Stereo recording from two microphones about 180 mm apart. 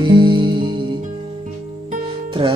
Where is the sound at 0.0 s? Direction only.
25° right (ahead or behind).